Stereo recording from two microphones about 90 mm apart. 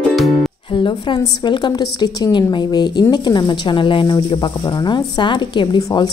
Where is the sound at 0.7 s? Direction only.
60° left (ahead or behind).